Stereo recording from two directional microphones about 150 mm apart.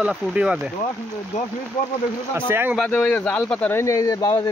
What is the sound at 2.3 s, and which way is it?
Speech, 15° right (ahead or behind).